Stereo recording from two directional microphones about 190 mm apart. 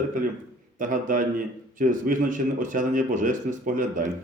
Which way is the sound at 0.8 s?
45° right (ahead or behind).